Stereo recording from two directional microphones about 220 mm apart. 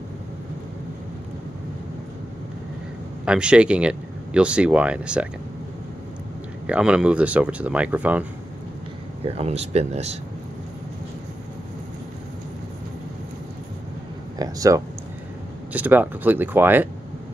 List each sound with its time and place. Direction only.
3.3 s speech: 5° right (ahead or behind)
6.7 s speech: 5° right (ahead or behind)
9.2 s speech: 25° right (ahead or behind)
14.4 s speech: 15° right (ahead or behind)